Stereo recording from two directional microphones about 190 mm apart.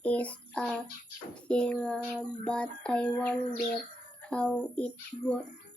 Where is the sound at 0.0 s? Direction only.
5° left (ahead or behind).